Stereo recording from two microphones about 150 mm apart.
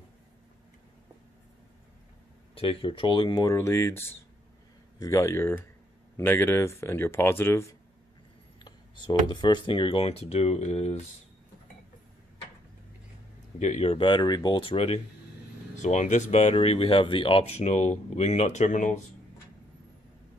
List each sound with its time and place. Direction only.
2.5 s speech: 35° left (ahead or behind); by 7.7 s 15° left (ahead or behind)
8.5 s speech: 30° left (ahead or behind)
13.6 s speech: 45° left (ahead or behind)
15.7 s speech: 55° left (ahead or behind)